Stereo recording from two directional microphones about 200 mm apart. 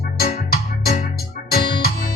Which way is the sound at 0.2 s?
50° left (ahead or behind).